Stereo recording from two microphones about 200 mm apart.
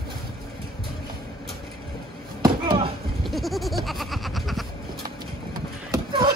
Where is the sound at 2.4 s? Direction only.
20° right (ahead or behind).